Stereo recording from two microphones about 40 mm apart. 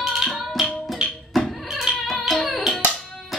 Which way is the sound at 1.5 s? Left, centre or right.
Centre.